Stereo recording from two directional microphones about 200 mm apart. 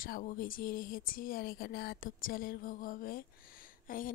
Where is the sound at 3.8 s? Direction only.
45° left (ahead or behind).